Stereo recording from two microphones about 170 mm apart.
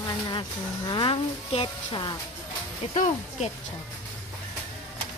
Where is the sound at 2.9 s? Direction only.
45° left (ahead or behind).